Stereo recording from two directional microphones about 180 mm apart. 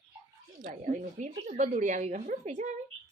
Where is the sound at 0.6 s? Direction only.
50° right (ahead or behind).